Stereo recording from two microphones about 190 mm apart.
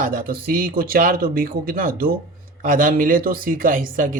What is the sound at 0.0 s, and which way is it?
Speech, 50° right (ahead or behind).